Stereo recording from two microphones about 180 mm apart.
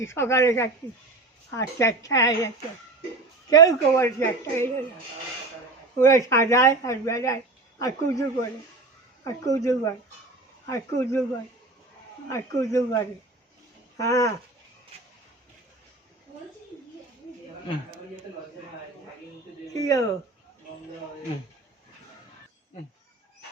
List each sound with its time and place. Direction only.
0.1 s speech: 15° left (ahead or behind)
3.5 s speech: 20° left (ahead or behind)
6.0 s speech: 15° left (ahead or behind)
12.3 s speech: 15° left (ahead or behind)
19.7 s speech: 20° left (ahead or behind)